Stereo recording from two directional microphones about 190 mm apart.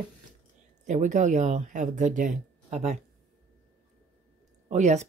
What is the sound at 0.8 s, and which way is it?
Speech, 40° right (ahead or behind).